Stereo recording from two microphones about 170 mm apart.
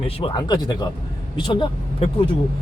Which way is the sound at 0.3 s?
25° left (ahead or behind).